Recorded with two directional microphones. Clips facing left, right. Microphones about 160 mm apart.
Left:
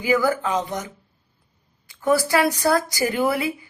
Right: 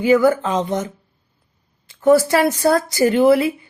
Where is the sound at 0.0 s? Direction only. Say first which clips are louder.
Right 6 dB; 25° right (ahead or behind).